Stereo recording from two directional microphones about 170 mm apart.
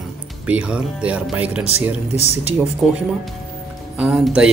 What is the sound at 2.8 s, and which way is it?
Speech, centre (ahead or behind).